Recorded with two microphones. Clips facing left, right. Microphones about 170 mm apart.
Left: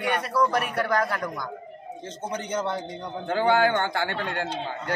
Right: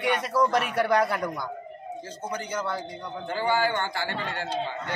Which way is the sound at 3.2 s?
60° left (ahead or behind).